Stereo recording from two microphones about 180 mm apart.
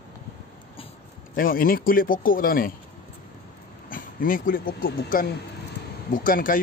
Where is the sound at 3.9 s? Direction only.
50° left (ahead or behind).